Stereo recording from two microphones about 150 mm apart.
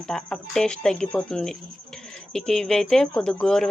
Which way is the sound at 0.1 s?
5° left (ahead or behind).